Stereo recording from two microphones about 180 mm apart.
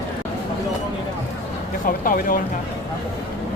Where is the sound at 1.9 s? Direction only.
50° left (ahead or behind).